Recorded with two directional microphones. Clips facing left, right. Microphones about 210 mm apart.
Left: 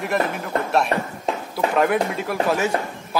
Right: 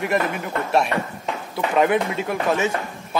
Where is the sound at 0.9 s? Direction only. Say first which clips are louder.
Left 1 dB; 35° left (ahead or behind).